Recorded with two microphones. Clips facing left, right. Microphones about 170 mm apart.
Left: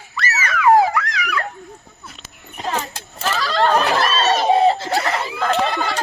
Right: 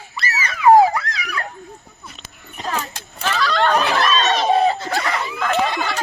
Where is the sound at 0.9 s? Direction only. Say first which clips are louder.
Left 3 dB; 30° right (ahead or behind).